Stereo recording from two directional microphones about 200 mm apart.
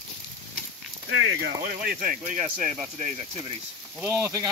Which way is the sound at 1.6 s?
40° right (ahead or behind).